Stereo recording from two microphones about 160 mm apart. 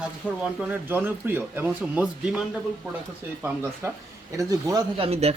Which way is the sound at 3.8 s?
15° right (ahead or behind).